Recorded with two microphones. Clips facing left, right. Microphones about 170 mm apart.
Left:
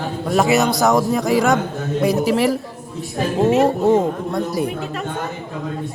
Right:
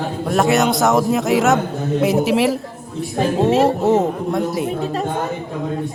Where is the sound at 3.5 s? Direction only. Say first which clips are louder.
Left 1 dB; 30° right (ahead or behind).